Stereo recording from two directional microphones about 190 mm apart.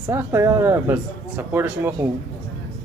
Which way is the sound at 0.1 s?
15° right (ahead or behind).